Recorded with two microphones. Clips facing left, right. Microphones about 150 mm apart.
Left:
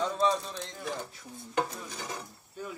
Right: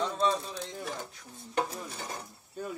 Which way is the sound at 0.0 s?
Centre (ahead or behind).